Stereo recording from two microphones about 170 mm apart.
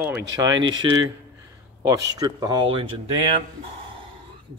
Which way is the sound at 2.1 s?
25° right (ahead or behind).